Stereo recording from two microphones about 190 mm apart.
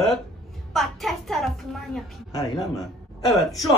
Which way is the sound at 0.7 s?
Centre (ahead or behind).